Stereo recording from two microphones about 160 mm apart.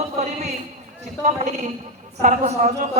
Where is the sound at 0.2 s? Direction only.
45° right (ahead or behind).